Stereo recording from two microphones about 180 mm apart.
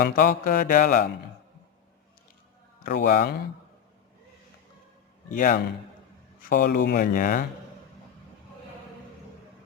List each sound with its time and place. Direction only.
0.0 s music: 50° left (ahead or behind)
2.8 s speech: 55° left (ahead or behind)
5.3 s music: 50° left (ahead or behind)